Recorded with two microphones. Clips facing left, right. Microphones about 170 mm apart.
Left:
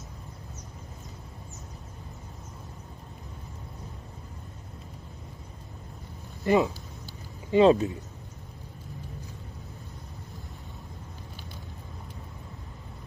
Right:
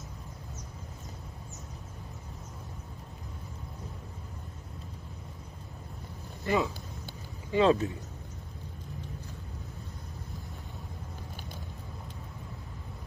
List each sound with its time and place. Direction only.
6.4 s speech: 20° left (ahead or behind)